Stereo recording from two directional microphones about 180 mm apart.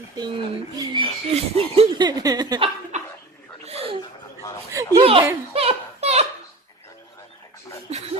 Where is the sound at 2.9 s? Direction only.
40° right (ahead or behind).